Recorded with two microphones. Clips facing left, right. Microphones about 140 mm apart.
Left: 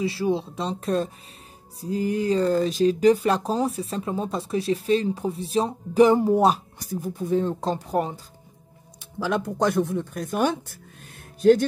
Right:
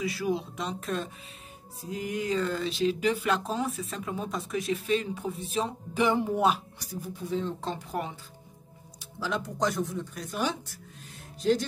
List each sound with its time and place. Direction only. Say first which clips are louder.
0.0 s speech: left 5 dB; 30° left (ahead or behind)
9.2 s speech: left 6 dB; 55° left (ahead or behind)